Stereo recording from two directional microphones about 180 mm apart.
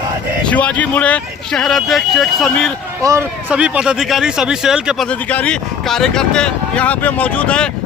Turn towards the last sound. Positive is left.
turn(degrees=5)  # may be behind; listen again after turning